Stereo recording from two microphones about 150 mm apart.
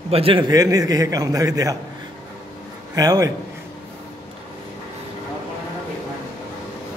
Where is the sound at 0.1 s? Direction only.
40° right (ahead or behind).